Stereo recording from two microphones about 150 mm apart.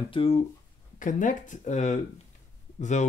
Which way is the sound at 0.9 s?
60° left (ahead or behind).